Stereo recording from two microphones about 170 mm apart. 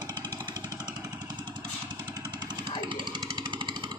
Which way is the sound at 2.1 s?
25° right (ahead or behind).